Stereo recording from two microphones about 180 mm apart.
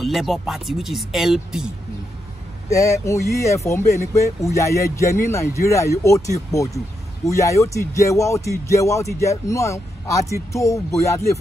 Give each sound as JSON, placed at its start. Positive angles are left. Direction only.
{"t": 0.0, "sound": "speech", "side_deg": 0}
{"t": 2.7, "sound": "a man's voice", "side_deg": 15}